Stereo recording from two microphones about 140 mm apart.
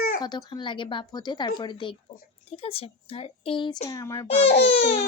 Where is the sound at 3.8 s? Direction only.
25° left (ahead or behind).